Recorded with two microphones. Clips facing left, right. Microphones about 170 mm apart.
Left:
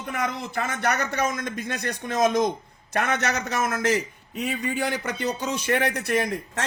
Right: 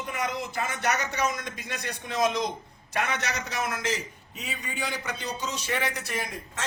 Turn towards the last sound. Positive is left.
turn(degrees=60)  # may be behind; listen again after turning